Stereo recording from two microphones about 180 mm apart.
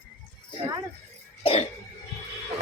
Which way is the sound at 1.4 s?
30° left (ahead or behind).